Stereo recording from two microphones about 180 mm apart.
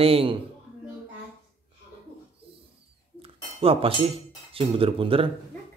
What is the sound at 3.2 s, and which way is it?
Cutlery, 30° right (ahead or behind).